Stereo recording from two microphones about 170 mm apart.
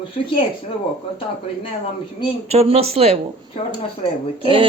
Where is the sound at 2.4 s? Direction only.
35° right (ahead or behind).